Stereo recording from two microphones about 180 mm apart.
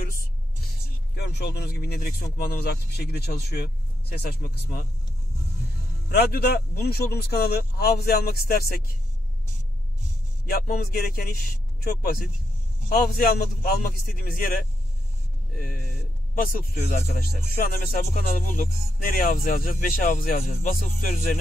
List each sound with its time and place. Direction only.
1.1 s speech: 65° left (ahead or behind)
6.0 s speech: 60° left (ahead or behind)
10.5 s speech: 55° left (ahead or behind)
17.2 s music: 55° left (ahead or behind)